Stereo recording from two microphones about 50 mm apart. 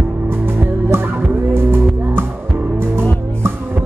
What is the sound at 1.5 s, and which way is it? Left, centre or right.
Music, right.